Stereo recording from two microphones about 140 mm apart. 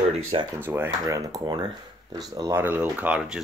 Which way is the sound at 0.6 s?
15° right (ahead or behind).